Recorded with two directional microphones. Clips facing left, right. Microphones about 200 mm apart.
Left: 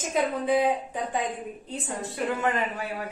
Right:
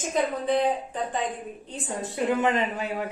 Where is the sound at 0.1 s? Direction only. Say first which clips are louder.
Even; 10° left (ahead or behind).